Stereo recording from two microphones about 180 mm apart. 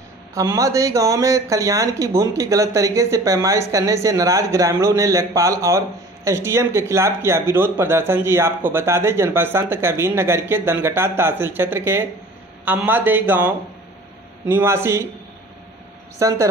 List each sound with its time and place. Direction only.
0.3 s speech: 15° right (ahead or behind)
16.2 s speech: 15° right (ahead or behind)